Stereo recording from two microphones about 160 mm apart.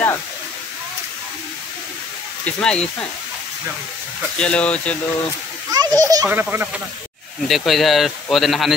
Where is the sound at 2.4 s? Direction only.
5° left (ahead or behind).